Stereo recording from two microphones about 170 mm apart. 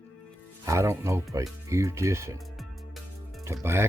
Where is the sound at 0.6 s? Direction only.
15° right (ahead or behind).